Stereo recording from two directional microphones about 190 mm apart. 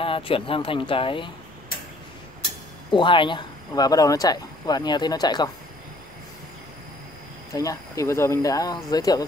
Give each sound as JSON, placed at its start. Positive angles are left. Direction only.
{"t": 0.0, "sound": "speech", "side_deg": 30}
{"t": 2.9, "sound": "speech", "side_deg": 25}
{"t": 7.5, "sound": "speech", "side_deg": 20}